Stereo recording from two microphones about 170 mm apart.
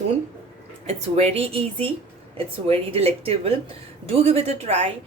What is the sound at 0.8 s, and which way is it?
Speech, 40° right (ahead or behind).